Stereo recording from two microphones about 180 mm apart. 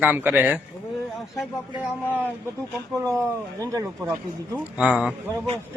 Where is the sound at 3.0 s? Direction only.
15° right (ahead or behind).